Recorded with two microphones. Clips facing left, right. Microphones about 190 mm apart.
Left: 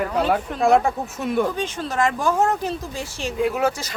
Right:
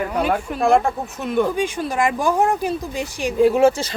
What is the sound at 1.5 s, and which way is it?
Speech, 10° right (ahead or behind).